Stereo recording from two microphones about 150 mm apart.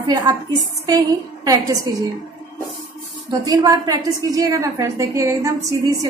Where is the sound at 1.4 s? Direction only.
25° right (ahead or behind).